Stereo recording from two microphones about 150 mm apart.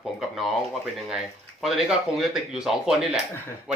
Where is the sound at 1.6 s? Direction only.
Centre (ahead or behind).